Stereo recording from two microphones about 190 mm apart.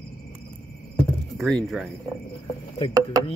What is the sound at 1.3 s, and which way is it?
Speech, centre (ahead or behind).